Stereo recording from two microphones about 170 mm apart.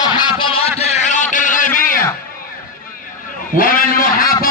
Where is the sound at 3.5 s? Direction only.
55° left (ahead or behind).